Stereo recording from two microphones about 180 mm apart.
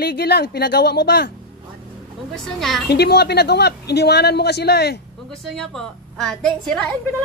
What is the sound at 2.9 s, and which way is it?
A man's voice, 65° left (ahead or behind).